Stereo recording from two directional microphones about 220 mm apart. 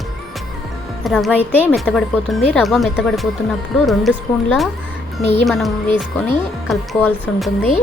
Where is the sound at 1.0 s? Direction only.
Centre (ahead or behind).